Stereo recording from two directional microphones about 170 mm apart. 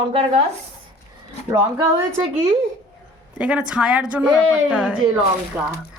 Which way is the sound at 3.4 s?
5° right (ahead or behind).